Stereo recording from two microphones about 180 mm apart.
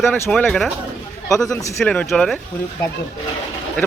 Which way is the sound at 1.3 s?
20° left (ahead or behind).